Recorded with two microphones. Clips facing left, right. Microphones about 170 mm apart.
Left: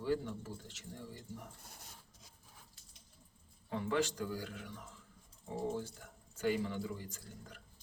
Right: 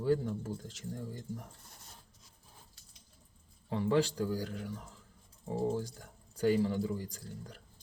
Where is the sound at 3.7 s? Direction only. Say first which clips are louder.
Right 5 dB; 35° right (ahead or behind).